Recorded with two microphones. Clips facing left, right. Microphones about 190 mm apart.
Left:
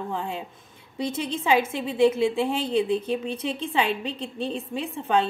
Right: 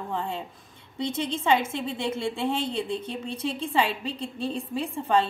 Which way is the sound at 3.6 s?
Centre (ahead or behind).